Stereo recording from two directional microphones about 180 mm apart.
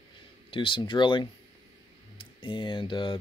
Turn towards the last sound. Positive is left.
turn(degrees=25)  # may be behind; listen again after turning